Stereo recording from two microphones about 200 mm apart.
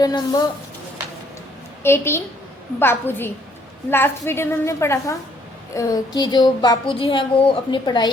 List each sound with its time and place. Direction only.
0.0 s speech: 20° left (ahead or behind)
1.8 s a woman's voice: 10° left (ahead or behind)